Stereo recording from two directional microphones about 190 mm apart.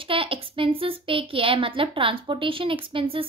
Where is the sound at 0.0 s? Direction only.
30° right (ahead or behind).